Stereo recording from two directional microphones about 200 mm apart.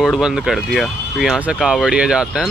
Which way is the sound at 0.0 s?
Centre (ahead or behind).